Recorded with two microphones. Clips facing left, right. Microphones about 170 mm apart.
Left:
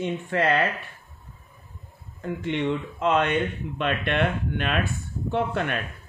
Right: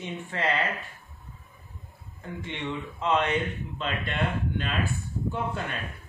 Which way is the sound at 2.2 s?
65° left (ahead or behind).